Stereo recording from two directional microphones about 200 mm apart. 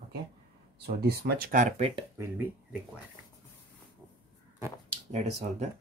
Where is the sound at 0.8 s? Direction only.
50° right (ahead or behind); by 2.0 s 30° right (ahead or behind).